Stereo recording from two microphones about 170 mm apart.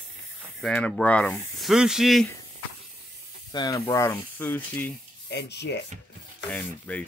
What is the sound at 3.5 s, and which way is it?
Speech, 25° left (ahead or behind).